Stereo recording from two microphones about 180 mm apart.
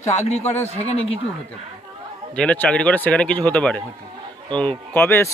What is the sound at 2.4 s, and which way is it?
Speech, 5° left (ahead or behind).